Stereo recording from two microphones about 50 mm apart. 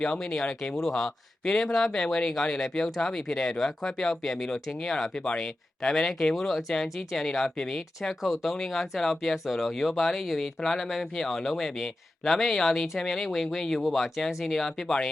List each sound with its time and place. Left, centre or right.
0.0 s speech: centre
0.8 s speech: centre
5.2 s speech: centre
5.8 s speech: centre